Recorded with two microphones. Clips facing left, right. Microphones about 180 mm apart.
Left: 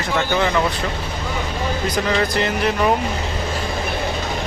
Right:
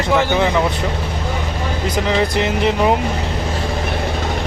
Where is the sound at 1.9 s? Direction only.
20° right (ahead or behind).